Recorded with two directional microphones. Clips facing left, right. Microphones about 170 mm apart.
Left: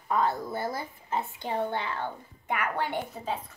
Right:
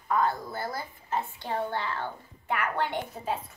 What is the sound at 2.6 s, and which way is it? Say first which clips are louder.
Speech: even; 10° left (ahead or behind).